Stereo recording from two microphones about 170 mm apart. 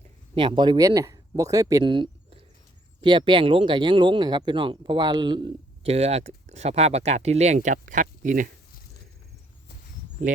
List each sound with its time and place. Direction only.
0.3 s speech: 30° right (ahead or behind); by 8.4 s 50° right (ahead or behind)